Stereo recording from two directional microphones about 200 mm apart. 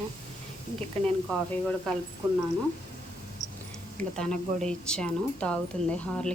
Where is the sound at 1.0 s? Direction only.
5° left (ahead or behind).